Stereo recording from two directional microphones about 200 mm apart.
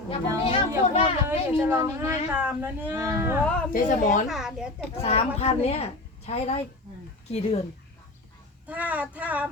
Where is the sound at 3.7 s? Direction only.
40° left (ahead or behind).